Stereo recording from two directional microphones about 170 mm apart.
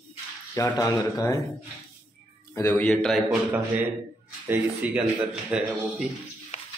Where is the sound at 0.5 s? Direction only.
20° left (ahead or behind).